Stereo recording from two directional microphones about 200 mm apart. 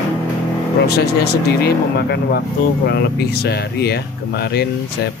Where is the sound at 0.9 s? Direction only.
55° left (ahead or behind).